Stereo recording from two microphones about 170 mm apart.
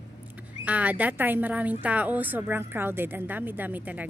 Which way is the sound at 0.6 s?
10° right (ahead or behind).